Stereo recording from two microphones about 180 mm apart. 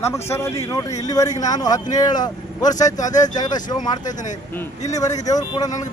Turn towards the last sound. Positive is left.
turn(degrees=20)  # may be behind; listen again after turning